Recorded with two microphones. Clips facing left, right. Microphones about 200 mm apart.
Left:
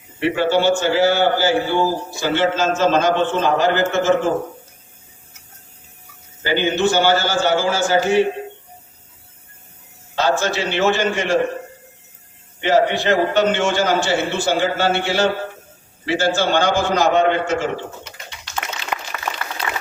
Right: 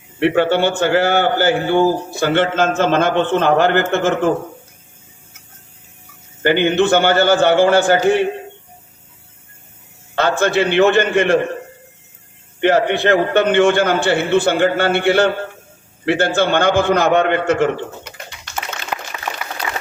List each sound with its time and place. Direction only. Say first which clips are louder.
0.2 s a man's voice: right 3 dB; 60° right (ahead or behind)
6.4 s a man's voice: right 4 dB; 60° right (ahead or behind)
10.2 s a man's voice: right 3 dB; 55° right (ahead or behind)
12.5 s a man's voice: right 2 dB; 60° right (ahead or behind)
19.3 s a sound: right 1 dB; 10° right (ahead or behind)